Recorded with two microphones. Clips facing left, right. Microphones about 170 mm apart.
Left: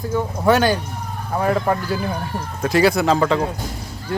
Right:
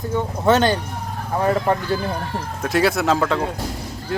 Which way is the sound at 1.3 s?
5° right (ahead or behind).